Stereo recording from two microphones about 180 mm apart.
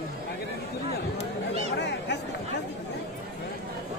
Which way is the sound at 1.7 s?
75° left (ahead or behind).